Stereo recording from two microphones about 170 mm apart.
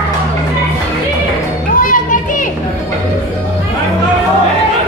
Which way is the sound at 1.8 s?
55° left (ahead or behind).